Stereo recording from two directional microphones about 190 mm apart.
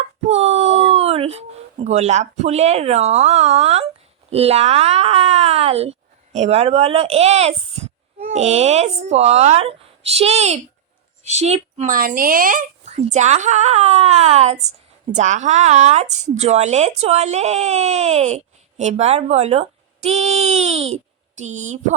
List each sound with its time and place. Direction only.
0.0 s speech: 35° right (ahead or behind)